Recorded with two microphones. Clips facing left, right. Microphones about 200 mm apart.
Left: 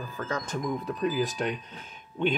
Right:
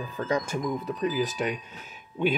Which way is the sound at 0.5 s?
Centre (ahead or behind).